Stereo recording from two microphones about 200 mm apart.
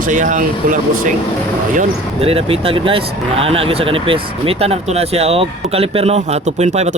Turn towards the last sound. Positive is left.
turn(degrees=-35)  # may be behind; listen again after turning